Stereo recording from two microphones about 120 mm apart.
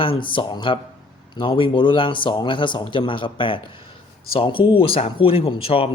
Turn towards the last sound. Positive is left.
turn(degrees=50)  # may be behind; listen again after turning